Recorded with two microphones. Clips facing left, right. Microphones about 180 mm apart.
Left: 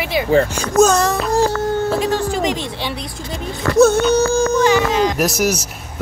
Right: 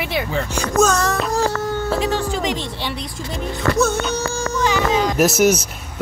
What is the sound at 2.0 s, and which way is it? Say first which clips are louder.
Speech: left 3 dB; 45° left (ahead or behind).